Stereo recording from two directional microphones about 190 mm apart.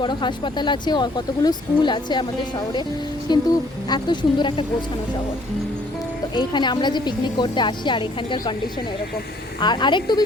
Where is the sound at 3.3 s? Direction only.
20° left (ahead or behind).